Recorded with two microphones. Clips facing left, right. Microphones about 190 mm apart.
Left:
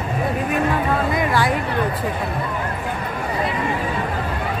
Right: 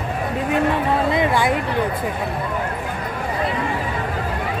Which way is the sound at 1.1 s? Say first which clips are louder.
Right 1 dB; 20° right (ahead or behind).